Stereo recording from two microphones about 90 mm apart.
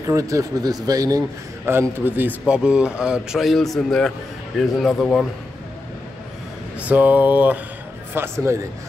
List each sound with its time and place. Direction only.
0.0 s speech: 35° right (ahead or behind)
1.7 s a man's voice: 25° right (ahead or behind)
2.4 s speech: 10° right (ahead or behind)
6.8 s a man's voice: 15° right (ahead or behind)